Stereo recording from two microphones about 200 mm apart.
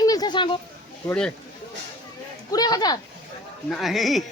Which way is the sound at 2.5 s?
20° left (ahead or behind).